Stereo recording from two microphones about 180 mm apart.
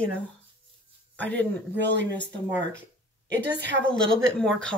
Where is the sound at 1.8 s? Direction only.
75° right (ahead or behind).